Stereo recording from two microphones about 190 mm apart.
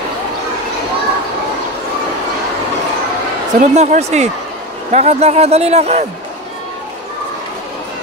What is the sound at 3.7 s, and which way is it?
A man's voice, 35° right (ahead or behind).